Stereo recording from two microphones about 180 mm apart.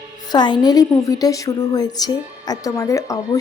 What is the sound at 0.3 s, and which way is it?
A woman's voice, 25° left (ahead or behind).